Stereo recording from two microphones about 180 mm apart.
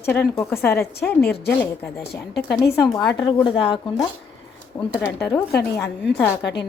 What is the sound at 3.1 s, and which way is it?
Speech, 20° left (ahead or behind).